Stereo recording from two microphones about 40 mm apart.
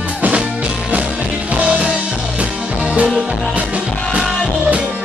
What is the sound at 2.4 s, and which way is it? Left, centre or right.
Music, right.